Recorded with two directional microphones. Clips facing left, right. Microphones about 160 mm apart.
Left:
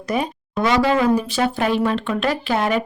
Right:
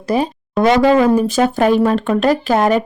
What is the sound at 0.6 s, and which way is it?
Speech, 50° right (ahead or behind).